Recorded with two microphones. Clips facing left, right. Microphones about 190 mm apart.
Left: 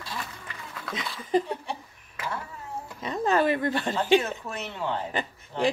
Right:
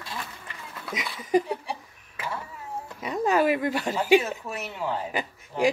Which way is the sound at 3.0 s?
10° right (ahead or behind).